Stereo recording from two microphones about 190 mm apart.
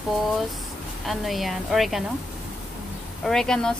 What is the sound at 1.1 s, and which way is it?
Speech, centre (ahead or behind).